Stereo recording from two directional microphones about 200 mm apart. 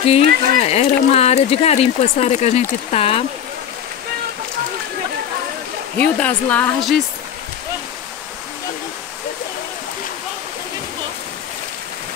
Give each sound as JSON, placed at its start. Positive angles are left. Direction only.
{"t": 0.0, "sound": "speech", "side_deg": 30}
{"t": 5.9, "sound": "speech", "side_deg": 5}